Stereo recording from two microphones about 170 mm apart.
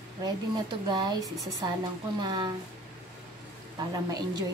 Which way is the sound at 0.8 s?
25° right (ahead or behind).